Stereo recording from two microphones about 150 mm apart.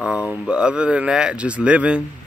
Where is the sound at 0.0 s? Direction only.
5° right (ahead or behind).